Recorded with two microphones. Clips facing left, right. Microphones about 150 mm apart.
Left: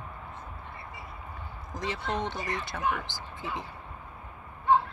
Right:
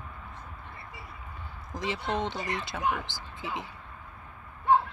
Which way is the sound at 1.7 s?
25° right (ahead or behind).